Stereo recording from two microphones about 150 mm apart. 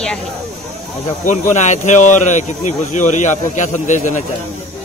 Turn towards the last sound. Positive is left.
turn(degrees=55)  # may be behind; listen again after turning